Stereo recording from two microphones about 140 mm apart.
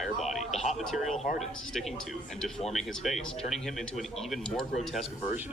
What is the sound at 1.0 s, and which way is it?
Speech, 60° left (ahead or behind).